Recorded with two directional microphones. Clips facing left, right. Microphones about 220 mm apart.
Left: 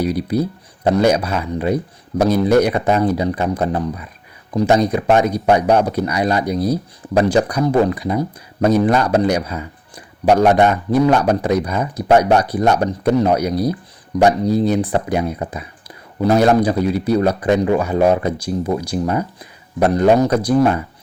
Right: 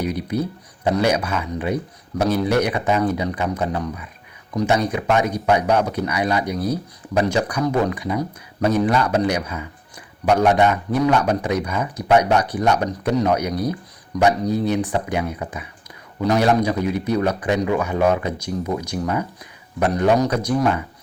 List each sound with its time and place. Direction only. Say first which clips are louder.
0.0 s speech: left 5 dB; 35° left (ahead or behind)